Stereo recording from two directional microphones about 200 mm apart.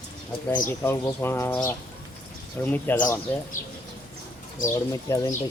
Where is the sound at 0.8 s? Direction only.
10° left (ahead or behind).